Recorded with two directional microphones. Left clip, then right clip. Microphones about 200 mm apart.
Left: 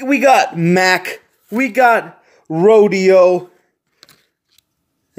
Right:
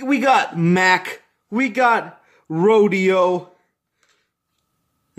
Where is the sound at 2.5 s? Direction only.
35° right (ahead or behind).